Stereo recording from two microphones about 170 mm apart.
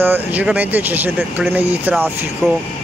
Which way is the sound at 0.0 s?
10° right (ahead or behind).